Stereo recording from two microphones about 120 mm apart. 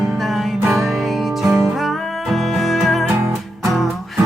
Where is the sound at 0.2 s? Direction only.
Centre (ahead or behind).